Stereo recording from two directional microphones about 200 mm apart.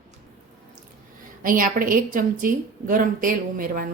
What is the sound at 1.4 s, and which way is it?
A woman's voice, 45° right (ahead or behind).